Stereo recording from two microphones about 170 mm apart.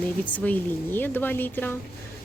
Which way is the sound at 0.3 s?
10° left (ahead or behind).